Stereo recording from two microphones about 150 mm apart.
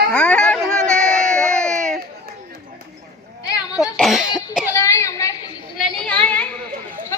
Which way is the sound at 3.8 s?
Centre (ahead or behind).